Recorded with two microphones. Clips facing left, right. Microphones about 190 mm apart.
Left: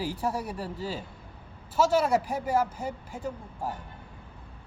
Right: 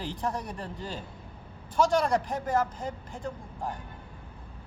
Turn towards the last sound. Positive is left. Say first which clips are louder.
# left 1 dB
turn(degrees=10)  # may be behind; listen again after turning